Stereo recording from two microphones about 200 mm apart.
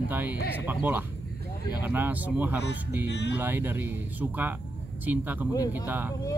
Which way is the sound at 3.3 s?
10° right (ahead or behind).